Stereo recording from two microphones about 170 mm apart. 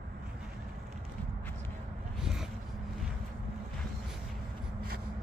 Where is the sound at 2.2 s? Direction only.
5° right (ahead or behind).